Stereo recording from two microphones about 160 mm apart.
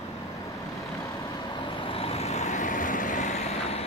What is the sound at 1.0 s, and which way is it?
Vehicle, 25° left (ahead or behind).